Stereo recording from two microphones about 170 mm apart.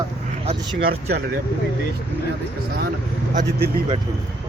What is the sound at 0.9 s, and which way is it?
Speech, 65° right (ahead or behind).